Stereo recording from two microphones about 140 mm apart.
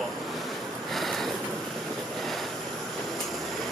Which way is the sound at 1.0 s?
Centre (ahead or behind).